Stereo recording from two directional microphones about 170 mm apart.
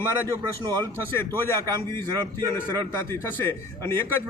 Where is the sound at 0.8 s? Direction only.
15° left (ahead or behind).